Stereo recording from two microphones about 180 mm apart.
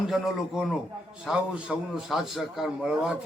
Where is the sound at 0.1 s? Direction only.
Centre (ahead or behind).